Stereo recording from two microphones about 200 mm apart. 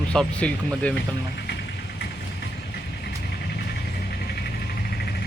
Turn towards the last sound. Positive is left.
turn(degrees=50)  # may be behind; listen again after turning